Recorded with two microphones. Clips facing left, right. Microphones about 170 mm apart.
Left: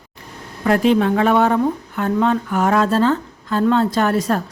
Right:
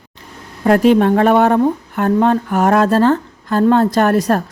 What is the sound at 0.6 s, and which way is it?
A woman's voice, 45° right (ahead or behind).